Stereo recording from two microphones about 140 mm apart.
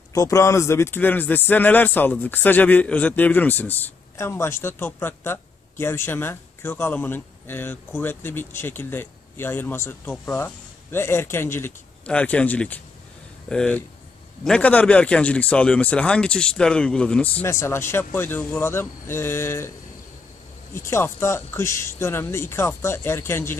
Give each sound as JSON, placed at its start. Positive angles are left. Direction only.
{"t": 0.1, "sound": "speech", "side_deg": 25}
{"t": 20.7, "sound": "speech", "side_deg": 20}